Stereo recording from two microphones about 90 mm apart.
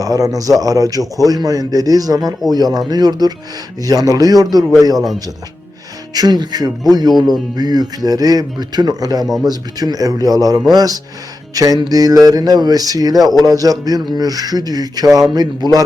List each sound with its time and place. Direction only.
0.0 s speech: 40° right (ahead or behind)
6.1 s speech: 50° right (ahead or behind)
7.1 s speech: centre (ahead or behind)
7.5 s speech: 50° right (ahead or behind)